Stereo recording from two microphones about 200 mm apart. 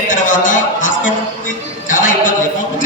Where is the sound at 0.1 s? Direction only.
40° left (ahead or behind).